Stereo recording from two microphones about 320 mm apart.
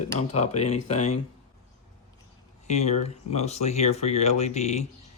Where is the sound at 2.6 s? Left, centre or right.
Left.